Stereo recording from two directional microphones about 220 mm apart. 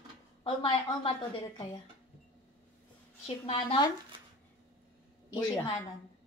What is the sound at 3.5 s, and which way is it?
Speech, 25° left (ahead or behind).